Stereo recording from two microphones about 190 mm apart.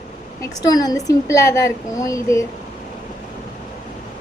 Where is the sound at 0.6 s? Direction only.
20° left (ahead or behind).